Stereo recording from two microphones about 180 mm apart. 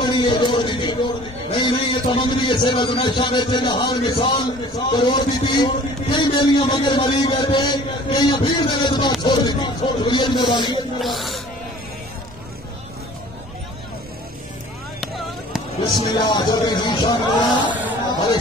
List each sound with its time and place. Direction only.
0.0 s a man's voice: 25° left (ahead or behind)
11.0 s speech: centre (ahead or behind)
16.3 s a man's voice: 20° left (ahead or behind)
17.6 s a sound: 10° right (ahead or behind)